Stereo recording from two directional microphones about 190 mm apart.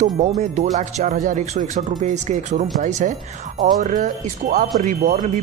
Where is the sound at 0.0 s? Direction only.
40° right (ahead or behind).